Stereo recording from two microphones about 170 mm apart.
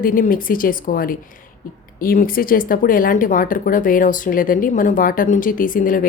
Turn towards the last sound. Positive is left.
turn(degrees=55)  # may be behind; listen again after turning